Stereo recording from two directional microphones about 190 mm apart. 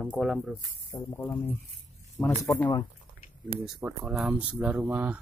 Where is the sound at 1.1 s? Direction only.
10° left (ahead or behind).